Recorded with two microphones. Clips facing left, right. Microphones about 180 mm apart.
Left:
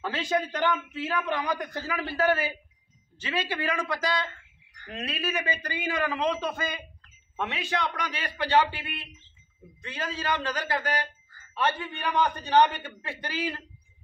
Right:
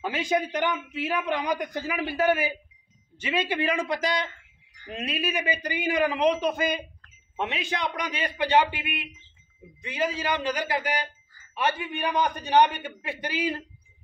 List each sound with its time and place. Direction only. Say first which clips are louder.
0.0 s a man's voice: right 2 dB; 15° right (ahead or behind)